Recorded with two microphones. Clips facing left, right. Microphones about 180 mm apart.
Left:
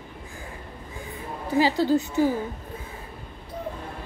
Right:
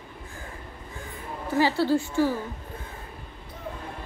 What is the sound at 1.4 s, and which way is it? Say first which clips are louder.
Speech: left 1 dB; 15° left (ahead or behind).